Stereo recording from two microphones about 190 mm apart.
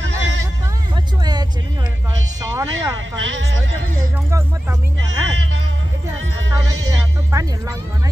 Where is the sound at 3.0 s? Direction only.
80° right.